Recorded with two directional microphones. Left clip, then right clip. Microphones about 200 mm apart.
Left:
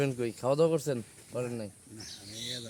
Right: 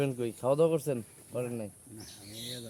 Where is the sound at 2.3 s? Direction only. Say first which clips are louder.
Left 3 dB; 15° right (ahead or behind).